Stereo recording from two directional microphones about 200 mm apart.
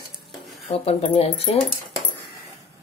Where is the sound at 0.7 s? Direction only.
30° left (ahead or behind).